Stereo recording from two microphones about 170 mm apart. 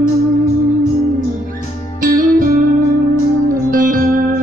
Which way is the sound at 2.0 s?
55° right (ahead or behind).